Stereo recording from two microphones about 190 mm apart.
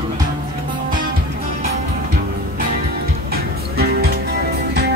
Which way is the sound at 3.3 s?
55° right (ahead or behind).